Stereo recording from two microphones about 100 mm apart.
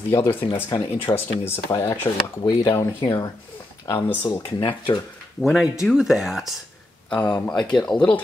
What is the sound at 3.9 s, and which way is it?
Speech, 15° left (ahead or behind).